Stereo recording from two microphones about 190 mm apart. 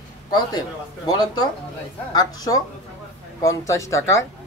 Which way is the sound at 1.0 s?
20° left (ahead or behind).